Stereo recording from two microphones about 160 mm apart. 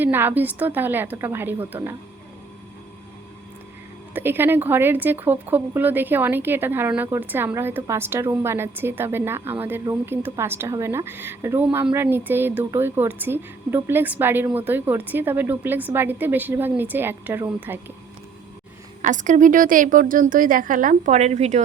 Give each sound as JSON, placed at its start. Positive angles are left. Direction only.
{"t": 0.0, "sound": "speech", "side_deg": -10}
{"t": 4.1, "sound": "speech", "side_deg": -15}
{"t": 19.0, "sound": "a woman's voice", "side_deg": -50}